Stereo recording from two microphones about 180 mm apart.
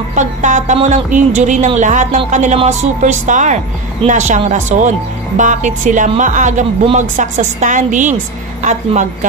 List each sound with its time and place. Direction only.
0.1 s speech: 40° right (ahead or behind)